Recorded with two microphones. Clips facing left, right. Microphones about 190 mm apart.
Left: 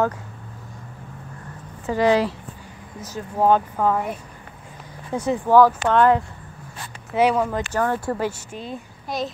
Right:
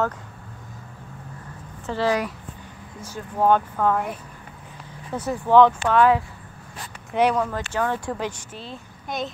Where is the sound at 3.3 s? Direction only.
10° left (ahead or behind).